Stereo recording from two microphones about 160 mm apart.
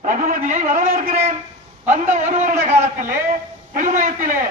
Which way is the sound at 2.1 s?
50° right (ahead or behind).